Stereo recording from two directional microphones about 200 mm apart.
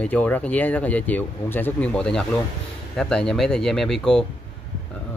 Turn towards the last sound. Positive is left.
turn(degrees=0)  # may be behind; listen again after turning